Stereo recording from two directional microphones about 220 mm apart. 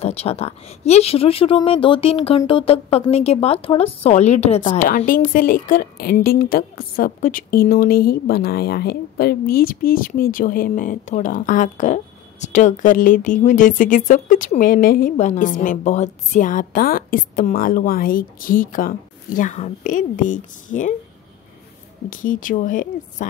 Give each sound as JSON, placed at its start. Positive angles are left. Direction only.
{"t": 0.0, "sound": "speech", "side_deg": 25}
{"t": 4.8, "sound": "a woman's voice", "side_deg": 40}
{"t": 22.1, "sound": "a woman's voice", "side_deg": 40}